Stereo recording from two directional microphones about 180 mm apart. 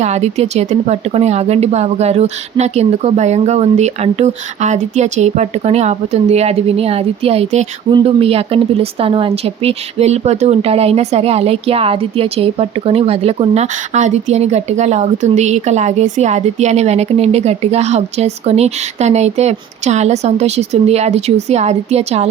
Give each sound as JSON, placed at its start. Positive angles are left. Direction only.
{"t": 0.0, "sound": "speech", "side_deg": -40}